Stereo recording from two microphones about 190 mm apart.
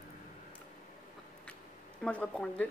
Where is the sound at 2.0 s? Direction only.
5° left (ahead or behind).